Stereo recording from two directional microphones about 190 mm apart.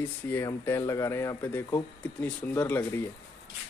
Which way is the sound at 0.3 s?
10° left (ahead or behind).